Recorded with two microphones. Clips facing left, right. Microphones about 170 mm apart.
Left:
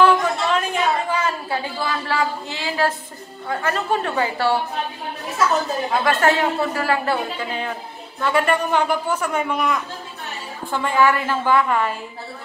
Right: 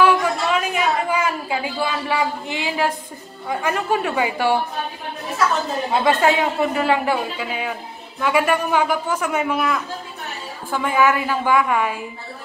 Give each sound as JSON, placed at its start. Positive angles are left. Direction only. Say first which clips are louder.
{"t": 0.0, "sound": "a sound", "louder": "even", "side_deg": -10}
{"t": 3.4, "sound": "a man's voice", "louder": "right 1 dB", "side_deg": -15}
{"t": 5.9, "sound": "speech", "louder": "right 2 dB", "side_deg": -20}
{"t": 7.3, "sound": "a man's voice", "louder": "even", "side_deg": -10}